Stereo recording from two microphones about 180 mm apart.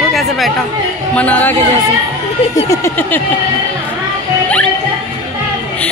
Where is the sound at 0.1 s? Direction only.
Centre (ahead or behind).